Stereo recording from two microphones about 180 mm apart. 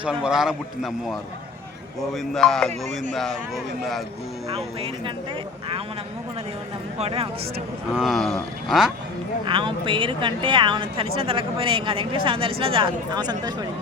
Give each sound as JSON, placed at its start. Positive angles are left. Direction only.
{"t": 0.0, "sound": "a man's voice", "side_deg": -5}
{"t": 4.5, "sound": "speech", "side_deg": -30}
{"t": 7.0, "sound": "speech", "side_deg": -30}
{"t": 7.9, "sound": "a man's voice", "side_deg": 0}
{"t": 9.5, "sound": "speech", "side_deg": -30}